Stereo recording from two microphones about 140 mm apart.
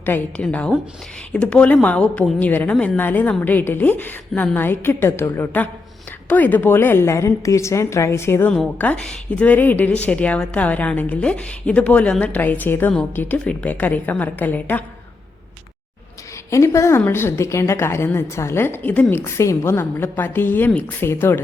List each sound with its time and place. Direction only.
0.0 s a woman's voice: 10° left (ahead or behind)
16.5 s a woman's voice: 20° left (ahead or behind)